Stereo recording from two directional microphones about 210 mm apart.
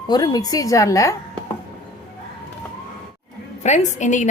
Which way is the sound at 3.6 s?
35° left (ahead or behind).